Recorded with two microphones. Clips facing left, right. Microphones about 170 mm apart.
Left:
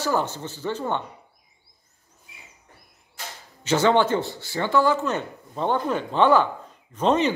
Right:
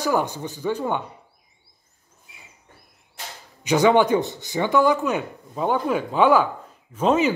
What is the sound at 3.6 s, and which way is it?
Speech, 15° right (ahead or behind).